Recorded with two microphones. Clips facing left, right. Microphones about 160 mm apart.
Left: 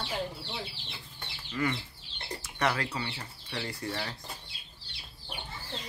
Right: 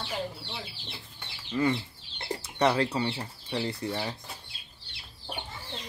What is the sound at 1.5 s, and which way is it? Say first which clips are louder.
Speech: right 5 dB; 25° right (ahead or behind).